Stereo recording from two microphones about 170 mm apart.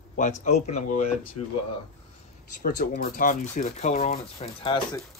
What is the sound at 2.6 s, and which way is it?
Speech, 60° left (ahead or behind).